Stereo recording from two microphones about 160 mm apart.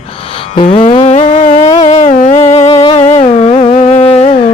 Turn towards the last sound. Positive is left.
turn(degrees=40)  # may be behind; listen again after turning